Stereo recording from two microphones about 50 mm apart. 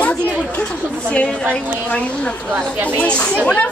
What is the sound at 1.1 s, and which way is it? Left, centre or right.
A woman's voice, left.